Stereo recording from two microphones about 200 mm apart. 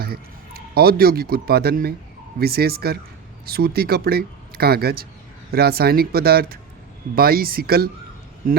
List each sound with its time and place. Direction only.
0.0 s a man's voice: 50° right (ahead or behind)